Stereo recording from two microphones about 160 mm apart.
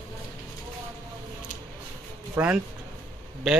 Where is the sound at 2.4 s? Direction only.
15° right (ahead or behind).